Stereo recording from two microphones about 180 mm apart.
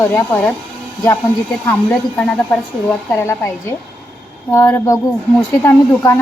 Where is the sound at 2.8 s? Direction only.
10° left (ahead or behind).